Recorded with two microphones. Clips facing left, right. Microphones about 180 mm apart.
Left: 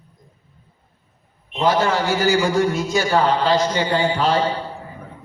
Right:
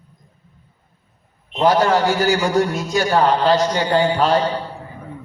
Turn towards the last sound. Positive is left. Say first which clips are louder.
# right 2 dB
turn(degrees=-45)  # may be behind; listen again after turning